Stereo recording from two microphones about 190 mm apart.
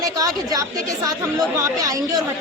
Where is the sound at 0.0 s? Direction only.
20° right (ahead or behind).